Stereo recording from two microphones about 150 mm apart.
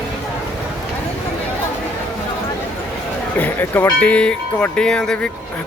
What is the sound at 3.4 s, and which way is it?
Speech, 15° left (ahead or behind).